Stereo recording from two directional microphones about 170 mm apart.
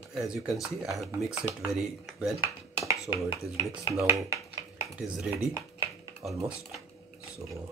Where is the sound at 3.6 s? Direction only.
20° right (ahead or behind).